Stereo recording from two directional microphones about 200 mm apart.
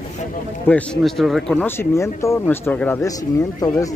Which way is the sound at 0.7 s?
5° left (ahead or behind).